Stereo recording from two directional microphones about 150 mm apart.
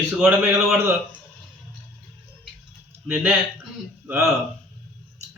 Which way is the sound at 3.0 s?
10° right (ahead or behind).